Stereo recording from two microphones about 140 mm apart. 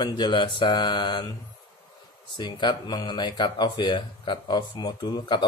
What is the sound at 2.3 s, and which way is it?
Speech, 35° left (ahead or behind).